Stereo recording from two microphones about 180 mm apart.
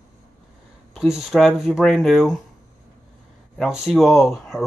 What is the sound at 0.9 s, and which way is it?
Speech, centre (ahead or behind).